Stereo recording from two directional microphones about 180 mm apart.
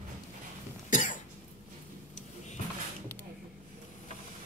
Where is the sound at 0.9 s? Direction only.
45° left (ahead or behind).